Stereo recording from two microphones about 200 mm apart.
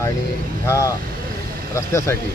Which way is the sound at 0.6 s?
15° left (ahead or behind).